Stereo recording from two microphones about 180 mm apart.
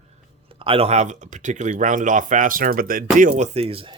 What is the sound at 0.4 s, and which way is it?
Speech, 30° right (ahead or behind).